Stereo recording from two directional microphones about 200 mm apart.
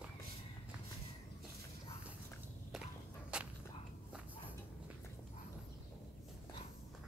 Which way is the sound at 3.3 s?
5° right (ahead or behind).